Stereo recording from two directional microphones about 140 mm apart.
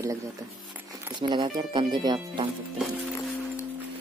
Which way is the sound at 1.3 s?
35° right (ahead or behind).